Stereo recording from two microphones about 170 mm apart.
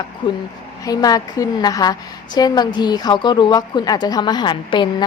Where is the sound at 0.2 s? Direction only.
30° left (ahead or behind).